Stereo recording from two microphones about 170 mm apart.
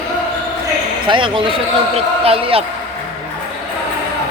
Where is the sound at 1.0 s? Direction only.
30° right (ahead or behind).